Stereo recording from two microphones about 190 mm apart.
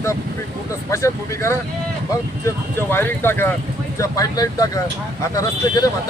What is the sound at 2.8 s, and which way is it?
Speech, 10° left (ahead or behind).